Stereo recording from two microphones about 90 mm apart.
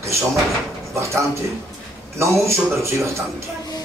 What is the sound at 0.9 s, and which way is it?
A man's voice, 30° right (ahead or behind).